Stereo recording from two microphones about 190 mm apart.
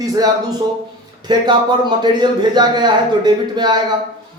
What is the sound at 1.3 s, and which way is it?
A man's voice, 20° right (ahead or behind).